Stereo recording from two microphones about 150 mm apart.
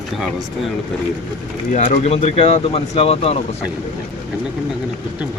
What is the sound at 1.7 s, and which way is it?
Speech, 50° left (ahead or behind).